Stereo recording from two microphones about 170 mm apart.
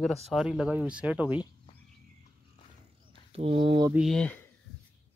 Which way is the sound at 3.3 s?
30° right (ahead or behind).